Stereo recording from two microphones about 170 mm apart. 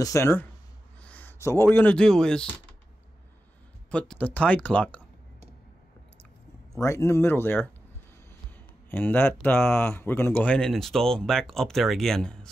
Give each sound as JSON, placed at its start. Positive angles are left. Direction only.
{"t": 0.0, "sound": "speech", "side_deg": 15}
{"t": 3.9, "sound": "speech", "side_deg": 10}
{"t": 6.7, "sound": "speech", "side_deg": 15}
{"t": 8.9, "sound": "speech", "side_deg": 10}